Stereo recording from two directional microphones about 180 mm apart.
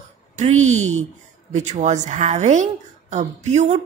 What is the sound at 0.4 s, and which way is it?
A woman's voice, 40° right (ahead or behind).